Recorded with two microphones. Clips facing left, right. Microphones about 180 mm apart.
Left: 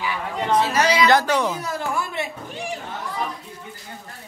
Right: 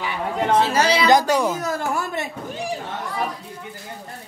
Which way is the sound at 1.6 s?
45° right (ahead or behind).